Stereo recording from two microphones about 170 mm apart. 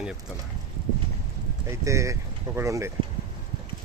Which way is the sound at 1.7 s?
15° right (ahead or behind).